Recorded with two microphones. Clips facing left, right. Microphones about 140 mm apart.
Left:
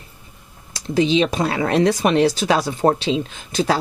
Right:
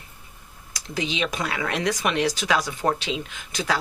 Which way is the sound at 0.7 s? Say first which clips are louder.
Left 11 dB; 30° left (ahead or behind).